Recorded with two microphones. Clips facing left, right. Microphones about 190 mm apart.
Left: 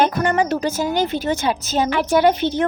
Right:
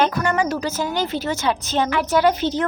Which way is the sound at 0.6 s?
15° left (ahead or behind).